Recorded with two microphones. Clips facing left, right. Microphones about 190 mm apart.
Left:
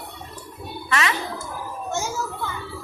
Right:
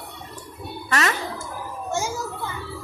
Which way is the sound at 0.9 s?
40° right (ahead or behind).